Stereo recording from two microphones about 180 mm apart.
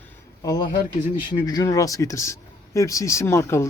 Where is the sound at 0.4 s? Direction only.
20° left (ahead or behind).